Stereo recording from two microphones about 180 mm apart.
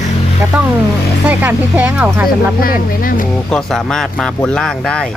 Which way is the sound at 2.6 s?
50° left (ahead or behind).